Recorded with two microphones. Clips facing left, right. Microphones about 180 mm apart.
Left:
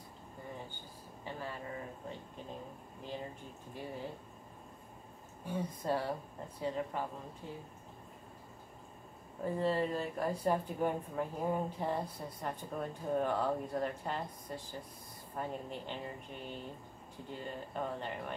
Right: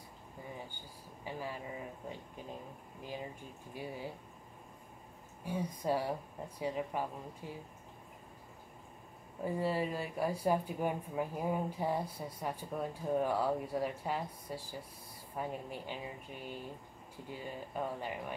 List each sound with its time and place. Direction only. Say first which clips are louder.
1.2 s speech: right 1 dB; 10° right (ahead or behind)
3.7 s speech: even; 10° right (ahead or behind)
5.4 s speech: right 1 dB; 10° right (ahead or behind)
9.4 s speech: left 1 dB; 10° right (ahead or behind)